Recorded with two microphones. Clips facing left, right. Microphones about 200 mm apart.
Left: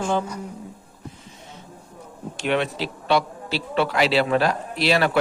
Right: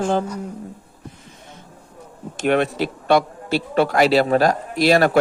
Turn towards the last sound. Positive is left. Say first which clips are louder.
# right 5 dB
turn(degrees=-45)  # may be behind; listen again after turning